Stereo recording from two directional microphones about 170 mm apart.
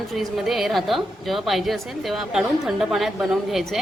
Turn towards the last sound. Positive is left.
turn(degrees=0)  # may be behind; listen again after turning